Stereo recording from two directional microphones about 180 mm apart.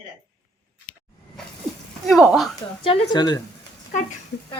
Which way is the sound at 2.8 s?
30° left (ahead or behind).